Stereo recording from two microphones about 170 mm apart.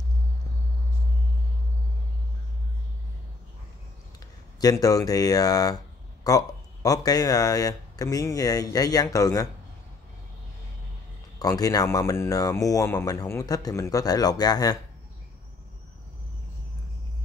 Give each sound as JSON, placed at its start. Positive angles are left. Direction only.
{"t": 4.6, "sound": "speech", "side_deg": 20}
{"t": 11.3, "sound": "speech", "side_deg": 20}